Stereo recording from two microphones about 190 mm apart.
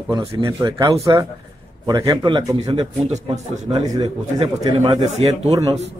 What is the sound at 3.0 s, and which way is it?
Speech, 35° right (ahead or behind).